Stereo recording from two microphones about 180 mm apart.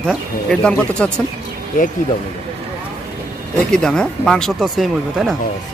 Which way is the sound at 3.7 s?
5° left (ahead or behind).